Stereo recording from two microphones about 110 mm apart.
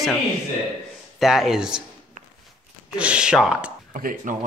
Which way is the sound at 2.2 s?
90° right.